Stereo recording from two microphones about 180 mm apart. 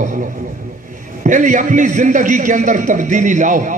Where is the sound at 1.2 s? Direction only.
45° right (ahead or behind).